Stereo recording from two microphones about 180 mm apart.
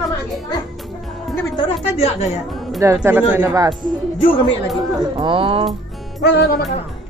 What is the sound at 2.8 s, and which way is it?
Speech, 15° right (ahead or behind).